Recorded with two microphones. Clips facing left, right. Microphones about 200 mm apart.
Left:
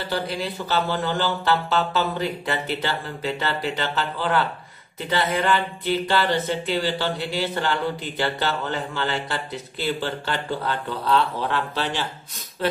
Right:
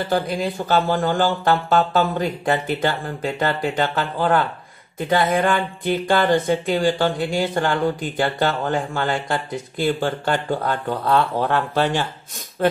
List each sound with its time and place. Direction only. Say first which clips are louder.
0.0 s speech: right 5 dB; 50° right (ahead or behind)